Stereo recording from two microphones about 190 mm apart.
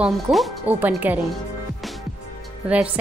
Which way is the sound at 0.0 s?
5° right (ahead or behind).